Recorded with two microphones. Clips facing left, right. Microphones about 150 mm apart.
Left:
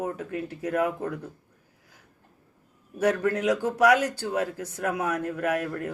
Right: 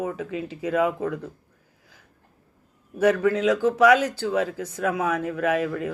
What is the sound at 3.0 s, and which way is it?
A man's voice, 90° right.